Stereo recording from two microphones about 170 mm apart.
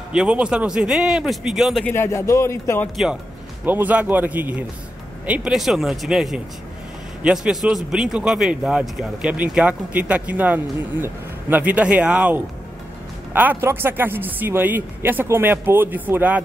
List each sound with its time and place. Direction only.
0.1 s a man's voice: 5° right (ahead or behind)
1.9 s speech: 15° left (ahead or behind)
3.6 s a man's voice: 10° right (ahead or behind)